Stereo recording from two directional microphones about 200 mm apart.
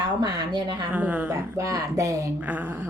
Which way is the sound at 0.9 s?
5° right (ahead or behind).